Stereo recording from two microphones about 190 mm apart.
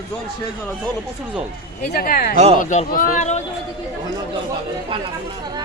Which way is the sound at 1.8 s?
50° left (ahead or behind).